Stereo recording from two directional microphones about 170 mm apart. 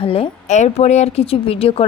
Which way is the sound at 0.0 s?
35° left (ahead or behind).